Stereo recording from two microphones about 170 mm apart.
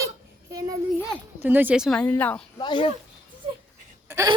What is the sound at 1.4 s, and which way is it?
Speech, 10° right (ahead or behind).